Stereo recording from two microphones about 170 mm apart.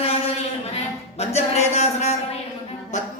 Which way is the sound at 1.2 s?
40° left (ahead or behind).